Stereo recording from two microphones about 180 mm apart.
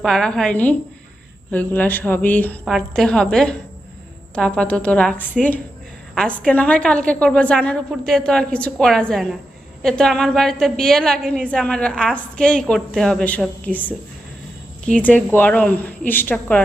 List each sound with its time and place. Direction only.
0.0 s a woman's voice: 5° left (ahead or behind)